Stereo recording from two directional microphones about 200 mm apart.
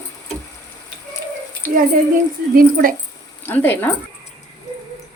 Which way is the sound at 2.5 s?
45° right (ahead or behind).